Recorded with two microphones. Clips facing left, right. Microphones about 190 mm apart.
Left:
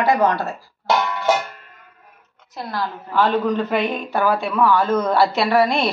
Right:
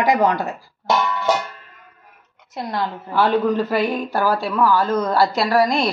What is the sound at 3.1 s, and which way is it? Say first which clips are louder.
A woman's voice: right 1 dB; 10° right (ahead or behind).